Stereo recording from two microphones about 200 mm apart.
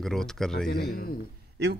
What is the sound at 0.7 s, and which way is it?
Speech, 50° left (ahead or behind).